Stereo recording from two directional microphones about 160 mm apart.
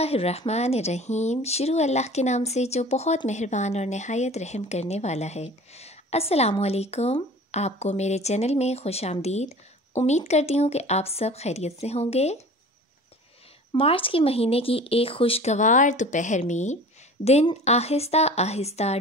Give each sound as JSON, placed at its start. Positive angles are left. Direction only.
{"t": 0.0, "sound": "speech", "side_deg": 40}
{"t": 13.7, "sound": "a woman's voice", "side_deg": 35}